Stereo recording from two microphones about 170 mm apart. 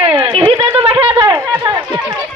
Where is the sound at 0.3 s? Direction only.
35° right (ahead or behind).